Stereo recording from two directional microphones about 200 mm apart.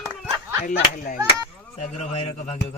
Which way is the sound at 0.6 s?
40° left (ahead or behind).